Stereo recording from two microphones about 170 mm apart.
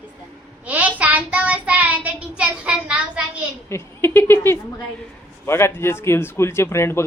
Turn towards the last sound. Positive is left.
turn(degrees=15)  # may be behind; listen again after turning